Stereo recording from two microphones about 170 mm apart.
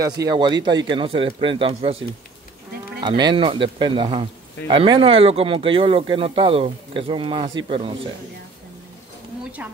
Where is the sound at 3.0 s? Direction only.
25° right (ahead or behind).